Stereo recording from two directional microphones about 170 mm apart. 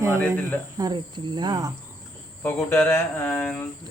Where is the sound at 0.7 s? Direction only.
20° right (ahead or behind).